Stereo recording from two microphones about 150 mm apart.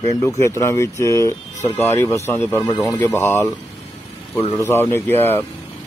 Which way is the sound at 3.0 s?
15° left (ahead or behind).